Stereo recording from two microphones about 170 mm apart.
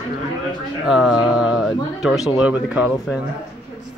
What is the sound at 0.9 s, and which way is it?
Speech, 5° right (ahead or behind).